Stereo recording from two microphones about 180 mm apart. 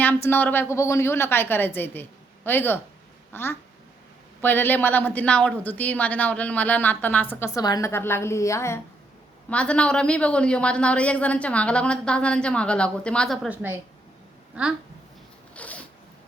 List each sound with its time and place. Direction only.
0.0 s a woman's voice: 10° left (ahead or behind)
13.5 s a woman's voice: 10° right (ahead or behind)
15.5 s zipper: 10° left (ahead or behind)